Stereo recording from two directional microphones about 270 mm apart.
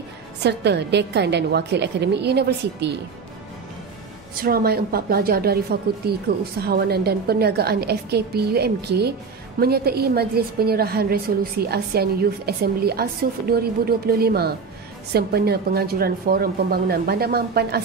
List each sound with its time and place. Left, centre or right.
0.4 s a woman's voice: right
4.4 s a woman's voice: right